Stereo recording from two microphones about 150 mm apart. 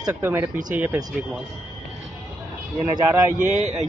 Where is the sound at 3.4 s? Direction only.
50° right (ahead or behind).